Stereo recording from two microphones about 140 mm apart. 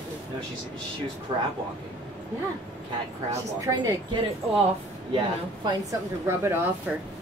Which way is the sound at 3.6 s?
25° right (ahead or behind).